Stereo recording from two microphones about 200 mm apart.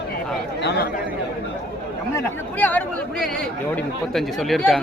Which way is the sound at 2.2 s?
10° left (ahead or behind).